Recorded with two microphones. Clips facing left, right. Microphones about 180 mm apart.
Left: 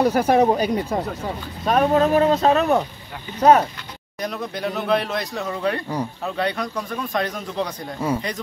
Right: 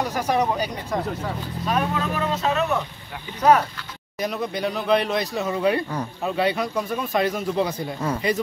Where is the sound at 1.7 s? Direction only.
45° left (ahead or behind).